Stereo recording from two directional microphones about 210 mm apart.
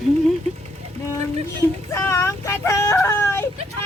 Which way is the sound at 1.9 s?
10° left (ahead or behind).